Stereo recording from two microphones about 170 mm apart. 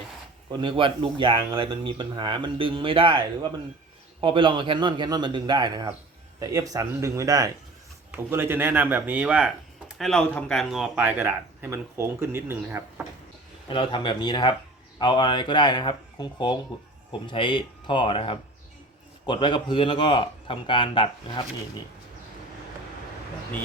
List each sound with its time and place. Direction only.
0.6 s a man's voice: 30° right (ahead or behind); by 9.5 s 5° right (ahead or behind)
10.0 s a man's voice: 5° left (ahead or behind); by 13.1 s 10° right (ahead or behind)
13.7 s speech: 30° left (ahead or behind)